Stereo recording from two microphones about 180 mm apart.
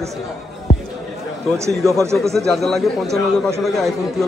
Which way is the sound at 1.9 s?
15° right (ahead or behind).